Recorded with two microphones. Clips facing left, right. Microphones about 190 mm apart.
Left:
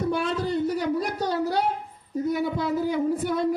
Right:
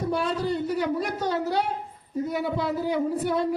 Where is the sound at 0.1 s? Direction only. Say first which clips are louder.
Even; 50° left (ahead or behind).